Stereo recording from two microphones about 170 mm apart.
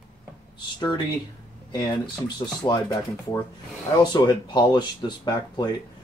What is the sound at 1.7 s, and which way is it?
Speech, 25° left (ahead or behind).